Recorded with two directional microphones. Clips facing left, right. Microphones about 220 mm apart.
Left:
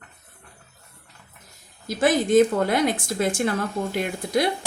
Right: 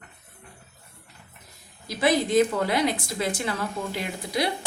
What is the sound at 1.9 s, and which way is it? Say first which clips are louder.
A woman's voice: left 3 dB; 45° left (ahead or behind).